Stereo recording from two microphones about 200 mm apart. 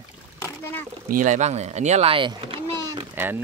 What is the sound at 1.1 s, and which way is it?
Speech, 40° right (ahead or behind).